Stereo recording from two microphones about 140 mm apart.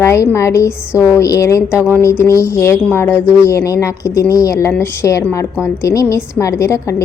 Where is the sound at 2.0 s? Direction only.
20° left (ahead or behind).